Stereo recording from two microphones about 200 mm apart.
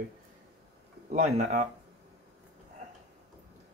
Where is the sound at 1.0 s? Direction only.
35° right (ahead or behind).